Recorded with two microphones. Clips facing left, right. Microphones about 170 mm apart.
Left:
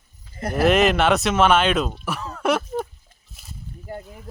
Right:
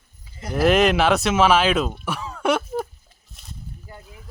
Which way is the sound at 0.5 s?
Centre (ahead or behind).